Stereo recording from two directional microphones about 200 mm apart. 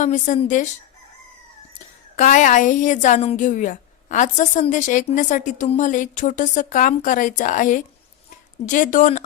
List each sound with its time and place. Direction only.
0.0 s a woman's voice: 40° left (ahead or behind)
2.1 s a woman's voice: 40° left (ahead or behind)